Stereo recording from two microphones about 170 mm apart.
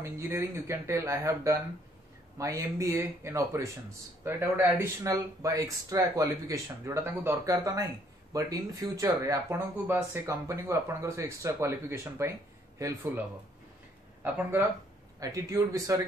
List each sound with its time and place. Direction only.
0.0 s speech: 15° right (ahead or behind)
14.2 s speech: 10° right (ahead or behind)